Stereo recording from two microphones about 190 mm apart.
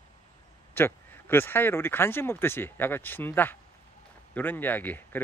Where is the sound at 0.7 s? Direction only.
10° left (ahead or behind).